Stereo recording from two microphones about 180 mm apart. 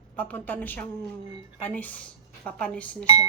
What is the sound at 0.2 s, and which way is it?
Speech, 10° left (ahead or behind).